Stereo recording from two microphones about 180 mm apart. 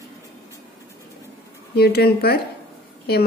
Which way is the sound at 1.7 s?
60° left (ahead or behind).